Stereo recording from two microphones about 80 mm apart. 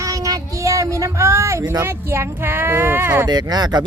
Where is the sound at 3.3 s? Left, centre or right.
Right.